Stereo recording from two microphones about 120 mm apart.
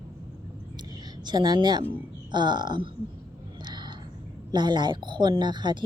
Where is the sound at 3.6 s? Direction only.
40° right (ahead or behind).